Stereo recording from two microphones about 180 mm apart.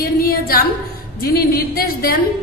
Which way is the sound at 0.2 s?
55° left (ahead or behind).